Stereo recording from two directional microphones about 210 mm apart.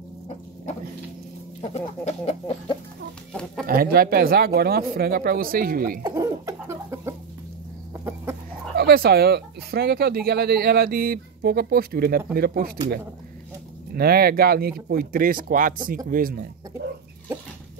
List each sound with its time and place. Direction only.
1.6 s chicken: 30° left (ahead or behind)
3.6 s speech: 45° right (ahead or behind)
6.0 s cough: 15° right (ahead or behind)
8.7 s speech: 50° right (ahead or behind)
13.9 s speech: 45° right (ahead or behind)